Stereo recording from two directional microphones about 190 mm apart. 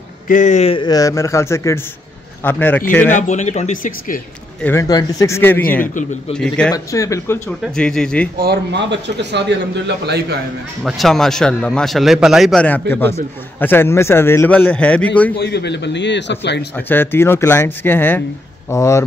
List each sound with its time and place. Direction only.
0.3 s a man's voice: 40° left (ahead or behind); by 3.1 s 10° left (ahead or behind)
3.1 s speech: 40° left (ahead or behind)
4.6 s a man's voice: 15° left (ahead or behind)
6.7 s a man's voice: 15° left (ahead or behind)
7.6 s a man's voice: 5° left (ahead or behind)
8.4 s speech: 60° right (ahead or behind)
10.8 s a man's voice: centre (ahead or behind)
15.3 s a man's voice: 60° left (ahead or behind)
16.7 s a man's voice: 10° left (ahead or behind)